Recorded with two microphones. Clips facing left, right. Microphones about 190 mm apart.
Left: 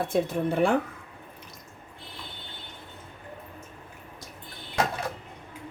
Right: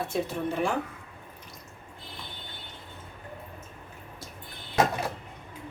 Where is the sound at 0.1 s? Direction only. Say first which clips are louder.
Left 4 dB; 60° left (ahead or behind).